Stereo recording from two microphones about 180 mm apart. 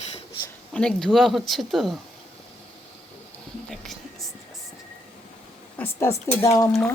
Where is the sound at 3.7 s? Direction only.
Centre (ahead or behind).